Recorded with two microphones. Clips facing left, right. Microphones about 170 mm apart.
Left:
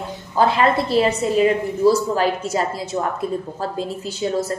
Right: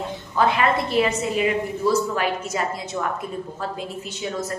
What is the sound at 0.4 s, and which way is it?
A woman's voice, 30° left (ahead or behind).